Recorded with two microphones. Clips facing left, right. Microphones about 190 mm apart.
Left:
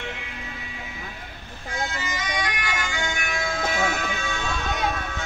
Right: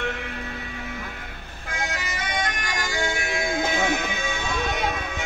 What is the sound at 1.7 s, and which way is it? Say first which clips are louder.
Bagpipes: left 1 dB; 75° right (ahead or behind).